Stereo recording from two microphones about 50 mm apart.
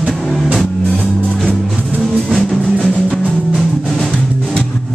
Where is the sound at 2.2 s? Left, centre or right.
Centre.